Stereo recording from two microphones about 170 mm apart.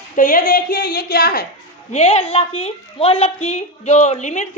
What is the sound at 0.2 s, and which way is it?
A woman's voice, 55° left (ahead or behind).